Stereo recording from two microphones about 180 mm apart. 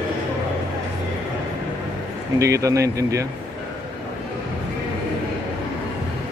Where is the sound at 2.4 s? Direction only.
20° right (ahead or behind).